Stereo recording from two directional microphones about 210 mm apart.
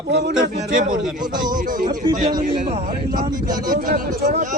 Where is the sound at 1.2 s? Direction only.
20° right (ahead or behind).